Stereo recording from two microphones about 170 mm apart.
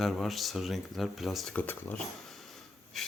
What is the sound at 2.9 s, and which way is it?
Breathing, centre (ahead or behind).